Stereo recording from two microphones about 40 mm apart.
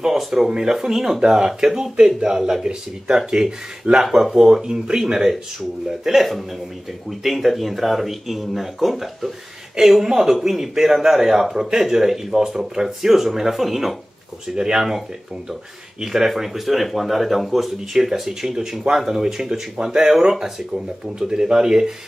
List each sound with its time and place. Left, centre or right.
0.0 s speech: centre
14.5 s speech: centre
16.0 s speech: centre